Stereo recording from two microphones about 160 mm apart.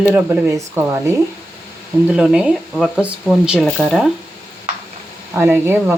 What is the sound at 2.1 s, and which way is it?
Speech, 5° right (ahead or behind).